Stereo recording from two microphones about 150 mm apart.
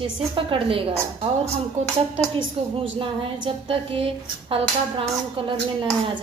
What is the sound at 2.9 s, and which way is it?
A woman's voice, 35° right (ahead or behind).